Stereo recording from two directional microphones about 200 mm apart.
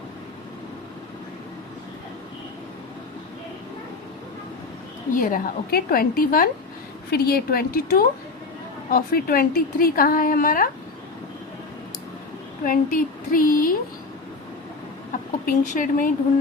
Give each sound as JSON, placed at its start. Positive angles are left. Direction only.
{"t": 5.1, "sound": "a woman's voice", "side_deg": 45}
{"t": 12.6, "sound": "a woman's voice", "side_deg": 45}
{"t": 15.4, "sound": "a woman's voice", "side_deg": 40}